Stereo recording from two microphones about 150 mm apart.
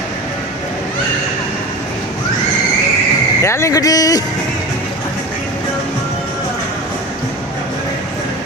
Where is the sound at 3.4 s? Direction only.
20° left (ahead or behind).